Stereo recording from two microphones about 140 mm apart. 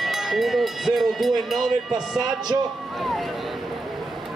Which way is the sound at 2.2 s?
30° right (ahead or behind).